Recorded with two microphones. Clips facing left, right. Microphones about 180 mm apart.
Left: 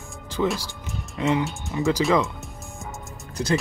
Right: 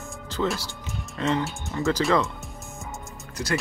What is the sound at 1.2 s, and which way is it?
Speech, 15° left (ahead or behind).